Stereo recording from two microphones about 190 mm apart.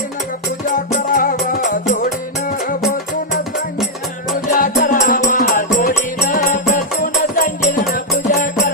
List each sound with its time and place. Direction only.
1.1 s music: 50° left (ahead or behind)
4.5 s music: 45° left (ahead or behind)